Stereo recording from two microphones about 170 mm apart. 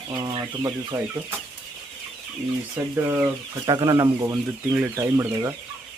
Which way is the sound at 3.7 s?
25° right (ahead or behind).